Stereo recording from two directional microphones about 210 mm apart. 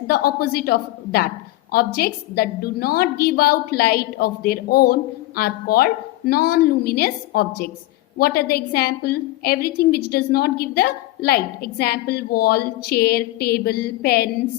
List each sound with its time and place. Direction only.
0.1 s a woman's voice: 45° left (ahead or behind)